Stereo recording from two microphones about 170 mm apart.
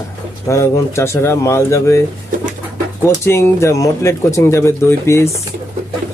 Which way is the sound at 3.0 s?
15° left (ahead or behind).